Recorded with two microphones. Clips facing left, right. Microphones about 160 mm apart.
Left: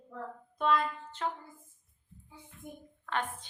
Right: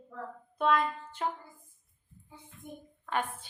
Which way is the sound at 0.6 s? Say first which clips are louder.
Right 2 dB; 10° right (ahead or behind).